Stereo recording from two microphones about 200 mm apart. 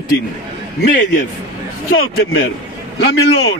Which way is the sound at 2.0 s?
50° left (ahead or behind).